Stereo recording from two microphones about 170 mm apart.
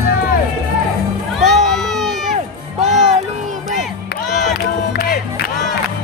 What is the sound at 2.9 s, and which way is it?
Music, centre (ahead or behind).